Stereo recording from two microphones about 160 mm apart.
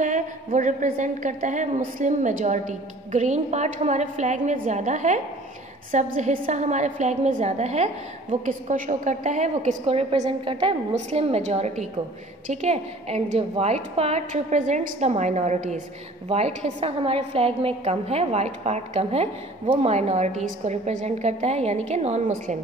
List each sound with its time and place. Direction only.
0.0 s a woman's voice: 50° right (ahead or behind)